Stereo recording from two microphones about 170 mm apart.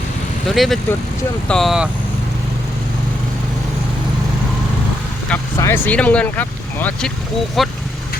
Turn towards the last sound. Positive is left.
turn(degrees=0)  # may be behind; listen again after turning